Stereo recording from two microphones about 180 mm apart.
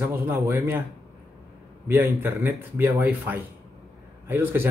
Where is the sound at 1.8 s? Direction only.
10° right (ahead or behind).